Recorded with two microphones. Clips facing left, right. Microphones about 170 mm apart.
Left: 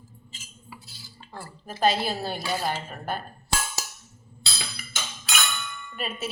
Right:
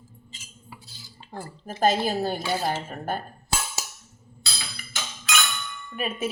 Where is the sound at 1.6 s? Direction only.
45° right (ahead or behind).